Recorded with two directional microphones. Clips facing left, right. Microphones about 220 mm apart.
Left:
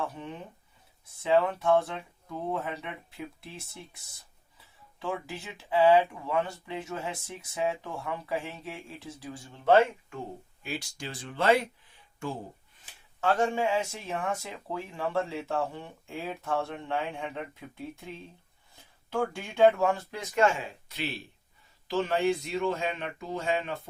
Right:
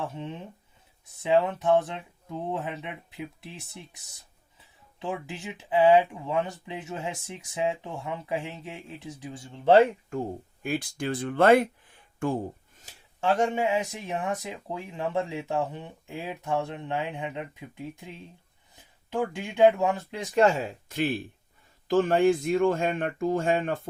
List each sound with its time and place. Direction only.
0.0 s speech: 25° right (ahead or behind)
4.9 s speech: 20° right (ahead or behind)
9.8 s speech: 45° right (ahead or behind)
13.2 s speech: 20° right (ahead or behind)
20.3 s speech: 35° right (ahead or behind)